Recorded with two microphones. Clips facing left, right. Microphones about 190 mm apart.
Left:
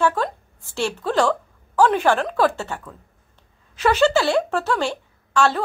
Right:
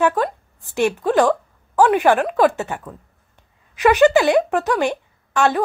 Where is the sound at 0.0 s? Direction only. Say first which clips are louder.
Right 3 dB; 15° right (ahead or behind).